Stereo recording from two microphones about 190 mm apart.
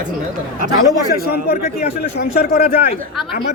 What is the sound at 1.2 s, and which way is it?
Speech, 50° left (ahead or behind).